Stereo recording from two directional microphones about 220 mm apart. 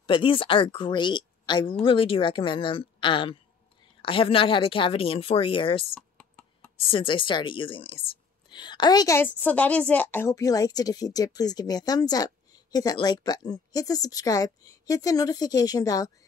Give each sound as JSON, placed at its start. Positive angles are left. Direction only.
{"t": 0.0, "sound": "speech", "side_deg": 25}
{"t": 5.9, "sound": "computer keyboard", "side_deg": 5}
{"t": 6.9, "sound": "a woman's voice", "side_deg": 25}